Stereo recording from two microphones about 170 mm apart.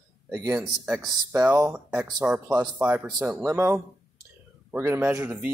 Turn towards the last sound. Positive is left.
turn(degrees=-10)  # may be behind; listen again after turning